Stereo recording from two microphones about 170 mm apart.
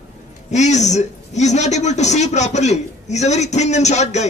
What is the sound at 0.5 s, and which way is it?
A man's voice, 45° left (ahead or behind).